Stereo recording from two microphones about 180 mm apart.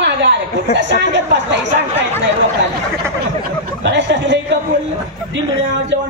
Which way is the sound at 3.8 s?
80° right.